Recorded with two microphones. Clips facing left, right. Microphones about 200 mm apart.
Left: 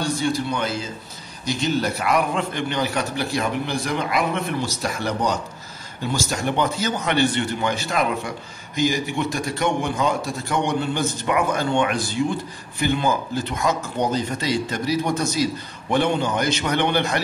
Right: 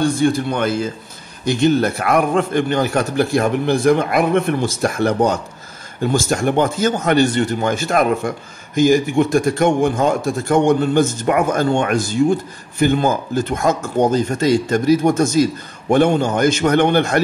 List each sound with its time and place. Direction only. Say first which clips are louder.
0.0 s a man's voice: right 7 dB; 55° right (ahead or behind)